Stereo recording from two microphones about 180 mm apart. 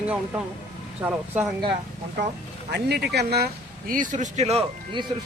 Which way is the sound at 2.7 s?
65° right (ahead or behind).